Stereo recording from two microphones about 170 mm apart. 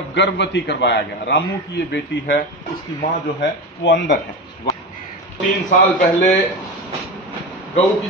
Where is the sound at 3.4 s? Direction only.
85° left.